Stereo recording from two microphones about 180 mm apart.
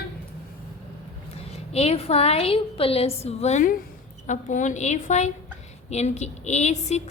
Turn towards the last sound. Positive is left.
turn(degrees=40)  # may be behind; listen again after turning